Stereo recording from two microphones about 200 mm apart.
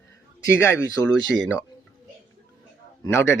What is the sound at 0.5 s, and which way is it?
A man's voice, 10° left (ahead or behind).